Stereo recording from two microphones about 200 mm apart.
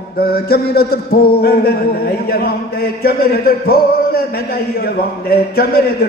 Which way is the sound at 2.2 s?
50° left (ahead or behind).